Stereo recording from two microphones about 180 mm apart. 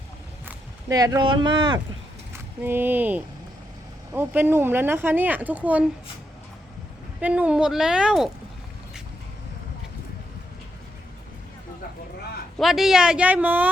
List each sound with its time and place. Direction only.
0.4 s speech: 20° right (ahead or behind)
2.6 s speech: 10° right (ahead or behind)
7.2 s speech: 10° right (ahead or behind)
12.5 s speech: centre (ahead or behind)